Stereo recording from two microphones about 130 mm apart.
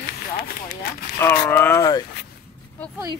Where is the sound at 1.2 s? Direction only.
20° left (ahead or behind).